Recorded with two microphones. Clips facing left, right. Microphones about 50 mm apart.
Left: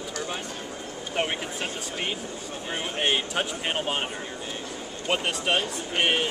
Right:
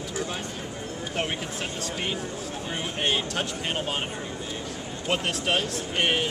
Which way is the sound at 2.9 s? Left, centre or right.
Centre.